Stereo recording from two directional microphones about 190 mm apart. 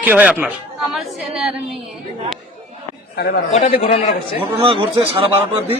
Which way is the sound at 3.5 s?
35° left (ahead or behind).